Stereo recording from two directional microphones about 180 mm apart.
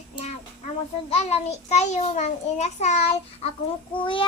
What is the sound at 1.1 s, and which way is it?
A child's voice, 35° left (ahead or behind).